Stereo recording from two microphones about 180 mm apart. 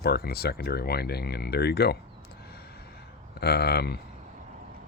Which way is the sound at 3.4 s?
60° left (ahead or behind).